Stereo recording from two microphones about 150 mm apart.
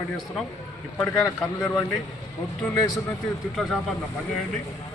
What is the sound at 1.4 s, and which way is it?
Speech, 5° left (ahead or behind).